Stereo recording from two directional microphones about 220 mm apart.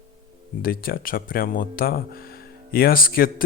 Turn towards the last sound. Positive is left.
turn(degrees=40)  # may be behind; listen again after turning